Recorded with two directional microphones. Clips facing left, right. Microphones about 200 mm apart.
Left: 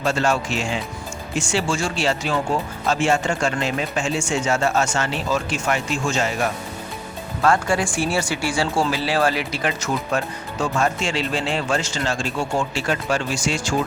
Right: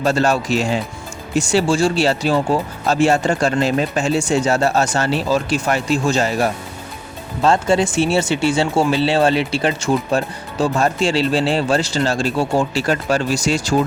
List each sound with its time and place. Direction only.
0.0 s speech: 40° right (ahead or behind)
7.4 s speech: 25° right (ahead or behind)